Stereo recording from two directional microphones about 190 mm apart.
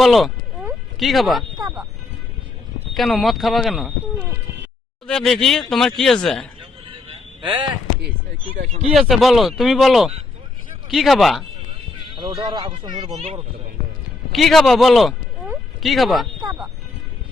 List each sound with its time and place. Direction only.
0.0 s speech: centre (ahead or behind)
0.6 s a sound: centre (ahead or behind)
2.9 s speech: centre (ahead or behind)
9.0 s speech: centre (ahead or behind)
12.1 s speech: 25° right (ahead or behind)
14.3 s speech: centre (ahead or behind)
16.4 s speech: 20° right (ahead or behind)